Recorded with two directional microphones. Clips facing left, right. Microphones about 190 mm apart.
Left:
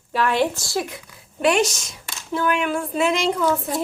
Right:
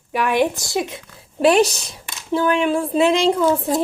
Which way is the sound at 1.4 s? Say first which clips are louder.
Right 4 dB; 35° right (ahead or behind).